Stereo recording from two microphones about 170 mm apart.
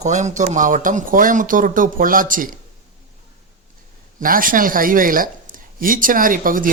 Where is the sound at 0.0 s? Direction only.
45° right (ahead or behind).